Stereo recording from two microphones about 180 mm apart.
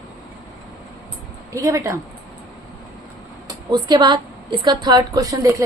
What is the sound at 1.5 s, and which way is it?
Speech, 15° right (ahead or behind).